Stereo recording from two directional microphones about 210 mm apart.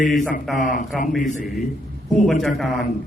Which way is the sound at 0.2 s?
40° left (ahead or behind).